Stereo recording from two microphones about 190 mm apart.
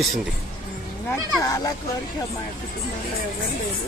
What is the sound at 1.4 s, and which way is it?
Speech, 20° left (ahead or behind).